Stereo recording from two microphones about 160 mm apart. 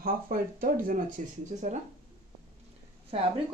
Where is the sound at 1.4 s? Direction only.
45° right (ahead or behind).